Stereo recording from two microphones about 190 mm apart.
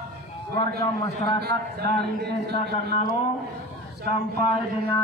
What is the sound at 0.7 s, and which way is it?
Speech, 20° left (ahead or behind).